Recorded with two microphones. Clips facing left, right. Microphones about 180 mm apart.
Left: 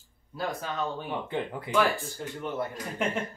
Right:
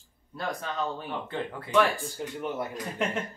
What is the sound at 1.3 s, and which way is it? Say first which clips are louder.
Speech: left 2 dB; 15° left (ahead or behind).